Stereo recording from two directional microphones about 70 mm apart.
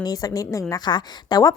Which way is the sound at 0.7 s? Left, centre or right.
Left.